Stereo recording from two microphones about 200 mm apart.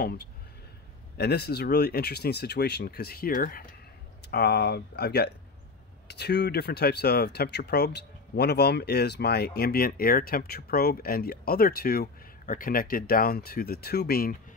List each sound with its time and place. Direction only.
1.1 s speech: 55° left (ahead or behind)